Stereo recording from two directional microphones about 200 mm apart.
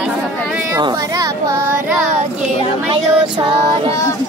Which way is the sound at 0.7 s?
20° right (ahead or behind).